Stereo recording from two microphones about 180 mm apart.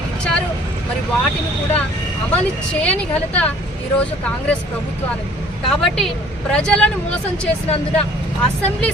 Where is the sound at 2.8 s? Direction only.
5° left (ahead or behind).